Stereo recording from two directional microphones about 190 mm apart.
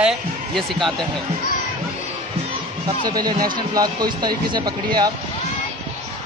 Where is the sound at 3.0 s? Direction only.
20° right (ahead or behind).